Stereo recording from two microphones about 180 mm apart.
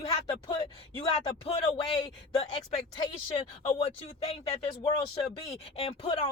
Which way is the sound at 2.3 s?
30° left (ahead or behind).